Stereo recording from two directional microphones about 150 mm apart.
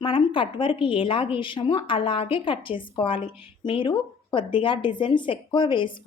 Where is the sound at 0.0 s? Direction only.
35° left (ahead or behind).